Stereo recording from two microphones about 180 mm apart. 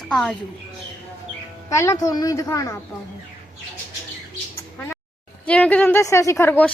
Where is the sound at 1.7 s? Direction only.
15° left (ahead or behind).